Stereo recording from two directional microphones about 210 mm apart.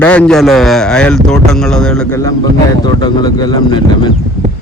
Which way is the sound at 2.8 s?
20° left (ahead or behind).